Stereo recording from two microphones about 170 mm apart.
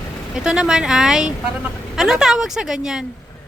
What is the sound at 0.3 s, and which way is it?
Speech, 5° right (ahead or behind).